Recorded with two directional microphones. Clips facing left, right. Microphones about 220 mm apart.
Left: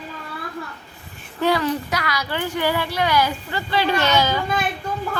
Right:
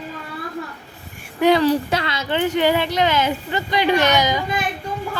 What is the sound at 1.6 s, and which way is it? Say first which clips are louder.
A child's voice: right 5 dB; 30° right (ahead or behind).